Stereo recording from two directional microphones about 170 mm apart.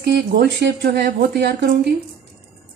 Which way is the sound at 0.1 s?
70° right (ahead or behind).